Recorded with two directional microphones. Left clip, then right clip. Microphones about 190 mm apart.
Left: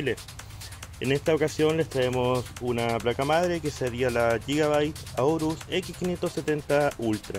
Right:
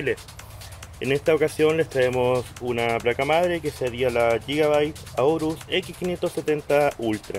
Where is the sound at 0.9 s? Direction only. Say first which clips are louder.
Right 4 dB; 15° left (ahead or behind).